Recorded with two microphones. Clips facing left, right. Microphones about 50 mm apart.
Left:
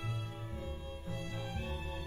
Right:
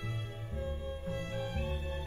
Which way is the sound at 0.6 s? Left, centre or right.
Right.